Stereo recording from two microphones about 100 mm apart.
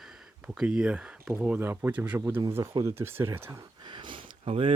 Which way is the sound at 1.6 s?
20° right (ahead or behind).